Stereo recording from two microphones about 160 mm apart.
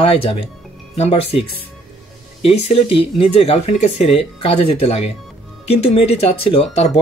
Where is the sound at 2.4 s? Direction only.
35° left (ahead or behind).